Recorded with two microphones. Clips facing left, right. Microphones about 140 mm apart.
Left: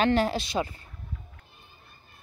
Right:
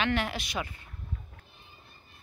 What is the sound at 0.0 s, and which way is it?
Speech, 35° left (ahead or behind).